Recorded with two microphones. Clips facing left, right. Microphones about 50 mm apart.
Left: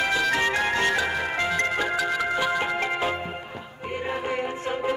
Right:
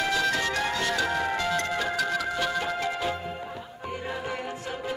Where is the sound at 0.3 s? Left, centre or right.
Left.